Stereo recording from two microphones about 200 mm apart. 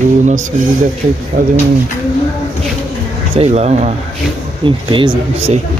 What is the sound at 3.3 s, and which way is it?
Speech, 30° right (ahead or behind).